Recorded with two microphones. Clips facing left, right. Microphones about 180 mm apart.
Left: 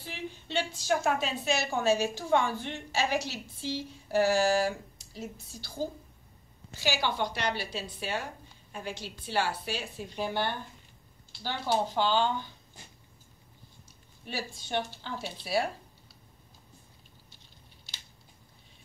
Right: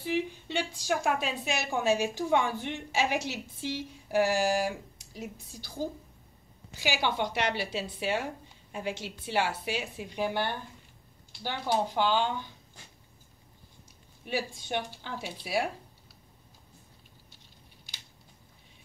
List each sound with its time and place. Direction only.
0.0 s a woman's voice: 10° right (ahead or behind)
14.2 s a woman's voice: 15° right (ahead or behind)